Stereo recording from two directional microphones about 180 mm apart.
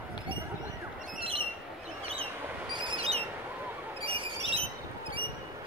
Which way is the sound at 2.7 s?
25° right (ahead or behind).